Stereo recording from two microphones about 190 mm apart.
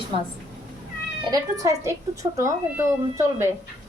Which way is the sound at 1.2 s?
20° right (ahead or behind).